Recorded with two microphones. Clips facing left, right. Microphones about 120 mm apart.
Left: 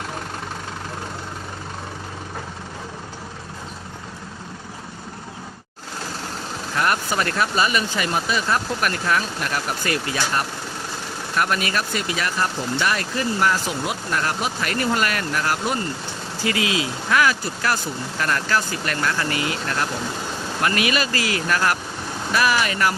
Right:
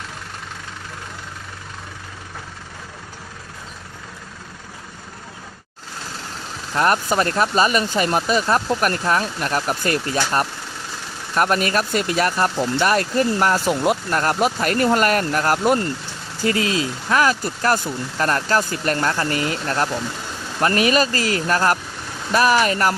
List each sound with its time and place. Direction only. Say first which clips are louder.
6.7 s speech: right 4 dB; 40° right (ahead or behind)